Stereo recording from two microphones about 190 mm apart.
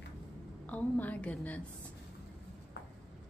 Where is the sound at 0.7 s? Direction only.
10° left (ahead or behind).